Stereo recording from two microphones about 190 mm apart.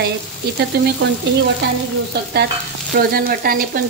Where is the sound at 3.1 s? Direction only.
50° right (ahead or behind).